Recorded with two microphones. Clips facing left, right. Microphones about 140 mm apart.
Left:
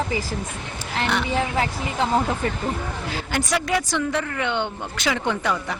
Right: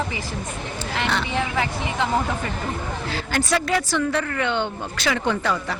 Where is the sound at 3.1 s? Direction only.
15° left (ahead or behind).